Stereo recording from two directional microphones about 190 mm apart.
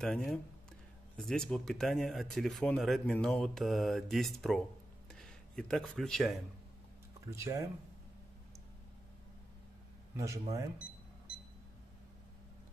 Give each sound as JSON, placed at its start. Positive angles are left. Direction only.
{"t": 0.0, "sound": "speech", "side_deg": 5}
{"t": 7.2, "sound": "speech", "side_deg": -15}
{"t": 10.1, "sound": "speech", "side_deg": -15}